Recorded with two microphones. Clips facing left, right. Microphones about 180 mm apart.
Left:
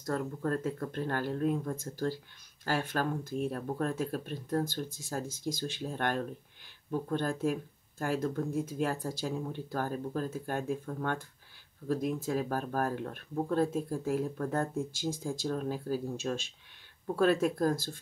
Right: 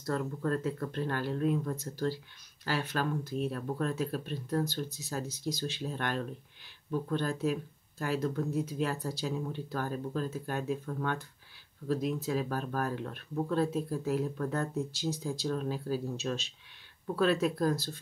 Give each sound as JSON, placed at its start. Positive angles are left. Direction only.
{"t": 0.0, "sound": "speech", "side_deg": 45}